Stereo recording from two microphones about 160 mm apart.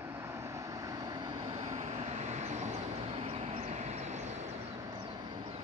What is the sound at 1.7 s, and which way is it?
Vehicle, 45° right (ahead or behind).